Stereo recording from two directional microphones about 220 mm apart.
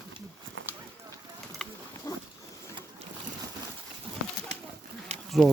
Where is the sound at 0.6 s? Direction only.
60° right (ahead or behind).